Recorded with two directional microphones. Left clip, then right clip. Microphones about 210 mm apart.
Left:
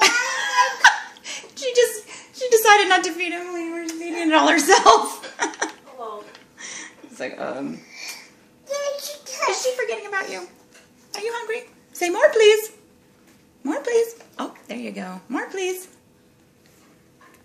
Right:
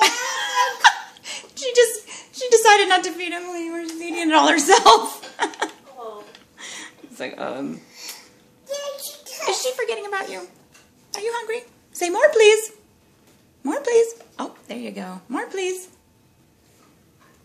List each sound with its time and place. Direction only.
0.0 s giggle: 5° right (ahead or behind)
4.0 s chuckle: 15° right (ahead or behind)
6.5 s a sound: 10° right (ahead or behind)
9.5 s a sound: 15° right (ahead or behind)
11.1 s a woman's voice: 5° right (ahead or behind)
13.7 s speech: 10° right (ahead or behind)